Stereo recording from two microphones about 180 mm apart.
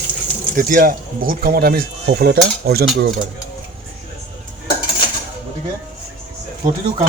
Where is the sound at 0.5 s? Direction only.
50° right (ahead or behind).